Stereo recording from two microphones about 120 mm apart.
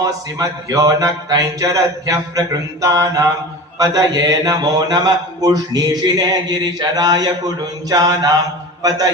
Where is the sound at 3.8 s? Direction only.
30° right (ahead or behind).